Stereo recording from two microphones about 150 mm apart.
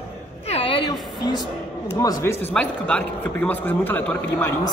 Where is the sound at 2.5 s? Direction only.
10° left (ahead or behind).